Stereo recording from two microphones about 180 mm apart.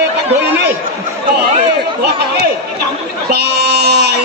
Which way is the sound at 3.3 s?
60° right (ahead or behind).